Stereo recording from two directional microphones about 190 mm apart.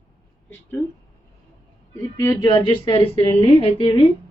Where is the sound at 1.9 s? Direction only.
15° left (ahead or behind).